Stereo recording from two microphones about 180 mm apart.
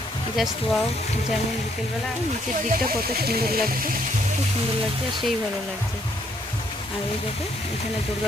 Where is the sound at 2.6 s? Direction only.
55° right (ahead or behind).